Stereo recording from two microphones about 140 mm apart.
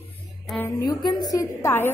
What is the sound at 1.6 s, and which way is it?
Speech, 15° left (ahead or behind).